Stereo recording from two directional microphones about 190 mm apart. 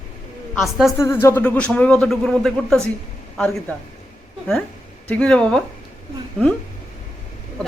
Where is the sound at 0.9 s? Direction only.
15° left (ahead or behind).